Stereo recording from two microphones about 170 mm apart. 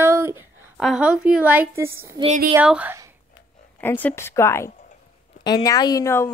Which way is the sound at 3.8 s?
10° left (ahead or behind).